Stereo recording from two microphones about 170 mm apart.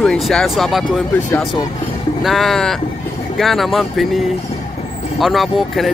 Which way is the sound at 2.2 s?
Centre (ahead or behind).